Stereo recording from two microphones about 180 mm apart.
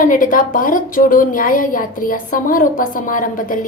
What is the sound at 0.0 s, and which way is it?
A woman's voice, 50° left (ahead or behind).